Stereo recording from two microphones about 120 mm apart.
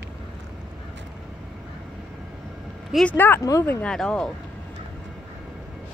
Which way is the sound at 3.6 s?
5° left (ahead or behind).